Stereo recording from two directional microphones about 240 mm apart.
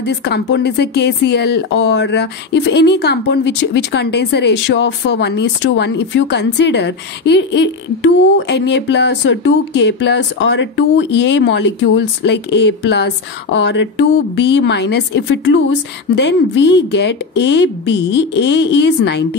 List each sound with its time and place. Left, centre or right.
0.0 s speech: left